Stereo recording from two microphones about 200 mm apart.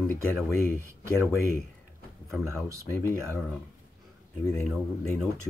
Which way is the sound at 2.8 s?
10° left (ahead or behind).